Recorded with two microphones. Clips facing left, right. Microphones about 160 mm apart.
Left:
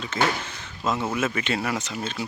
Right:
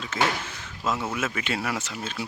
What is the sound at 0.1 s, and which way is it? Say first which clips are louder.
Speech: left 1 dB; 5° right (ahead or behind).